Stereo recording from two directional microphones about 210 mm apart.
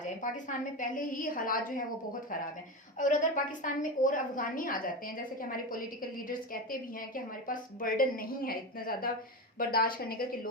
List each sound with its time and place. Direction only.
0.0 s a woman's voice: 35° left (ahead or behind)
3.0 s a woman's voice: 35° left (ahead or behind)